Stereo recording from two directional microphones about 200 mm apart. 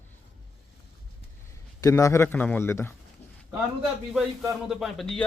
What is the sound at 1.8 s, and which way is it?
A man's voice, 15° left (ahead or behind).